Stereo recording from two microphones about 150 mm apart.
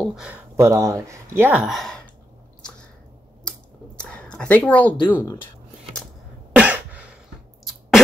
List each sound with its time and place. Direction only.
0.0 s speech: 5° right (ahead or behind)
0.6 s speech: 20° right (ahead or behind); by 2.0 s centre (ahead or behind)
3.4 s a sound: 5° left (ahead or behind)
5.1 s speech: 15° left (ahead or behind)
6.5 s cough: 10° right (ahead or behind)